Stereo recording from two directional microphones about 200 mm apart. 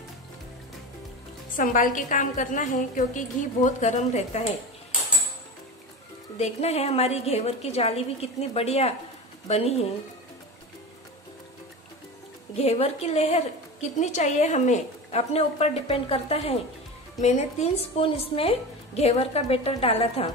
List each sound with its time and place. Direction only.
1.6 s a woman's voice: 40° left (ahead or behind)
6.3 s a woman's voice: 30° left (ahead or behind)
12.5 s a woman's voice: 30° left (ahead or behind)